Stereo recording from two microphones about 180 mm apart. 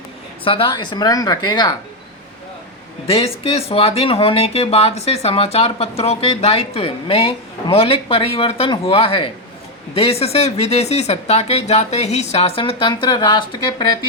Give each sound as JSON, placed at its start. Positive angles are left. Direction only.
{"t": 0.4, "sound": "speech", "side_deg": 30}
{"t": 3.1, "sound": "speech", "side_deg": 30}